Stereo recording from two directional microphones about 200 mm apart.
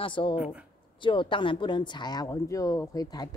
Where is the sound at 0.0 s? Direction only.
25° left (ahead or behind).